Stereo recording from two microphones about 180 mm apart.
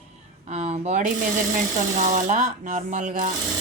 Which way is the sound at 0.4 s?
40° right (ahead or behind).